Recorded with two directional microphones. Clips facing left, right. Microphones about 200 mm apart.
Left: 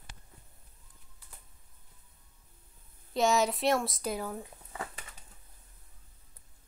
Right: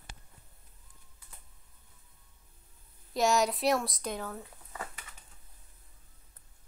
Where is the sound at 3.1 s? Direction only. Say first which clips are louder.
Even; centre (ahead or behind).